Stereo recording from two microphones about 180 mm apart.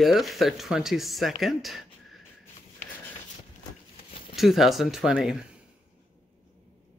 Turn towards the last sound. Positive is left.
turn(degrees=0)  # may be behind; listen again after turning